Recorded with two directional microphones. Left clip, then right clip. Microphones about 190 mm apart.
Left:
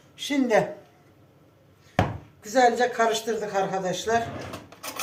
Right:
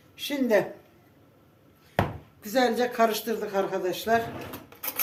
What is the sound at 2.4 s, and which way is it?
Speech, 50° right (ahead or behind).